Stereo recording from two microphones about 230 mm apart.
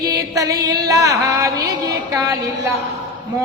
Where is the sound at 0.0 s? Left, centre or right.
Centre.